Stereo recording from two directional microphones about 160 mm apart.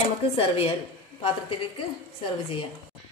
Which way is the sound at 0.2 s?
40° left (ahead or behind).